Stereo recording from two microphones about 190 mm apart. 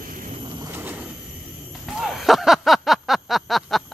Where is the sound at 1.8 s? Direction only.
Centre (ahead or behind).